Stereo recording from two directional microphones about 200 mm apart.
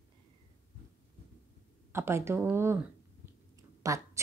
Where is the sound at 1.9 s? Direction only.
15° right (ahead or behind).